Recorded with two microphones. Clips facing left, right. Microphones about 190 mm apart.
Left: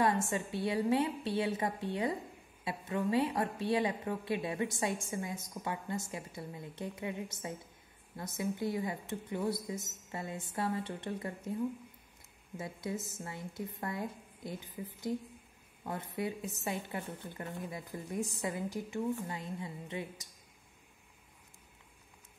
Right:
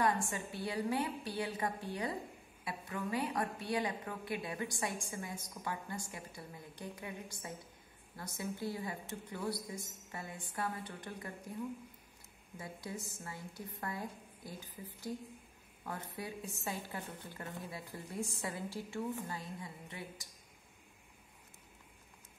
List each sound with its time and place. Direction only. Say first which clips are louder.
0.0 s a woman's voice: left 3 dB; 20° left (ahead or behind)
12.5 s a woman's voice: left 6 dB; 20° left (ahead or behind)